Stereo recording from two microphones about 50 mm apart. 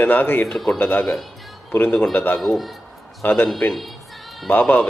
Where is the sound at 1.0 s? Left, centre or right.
Centre.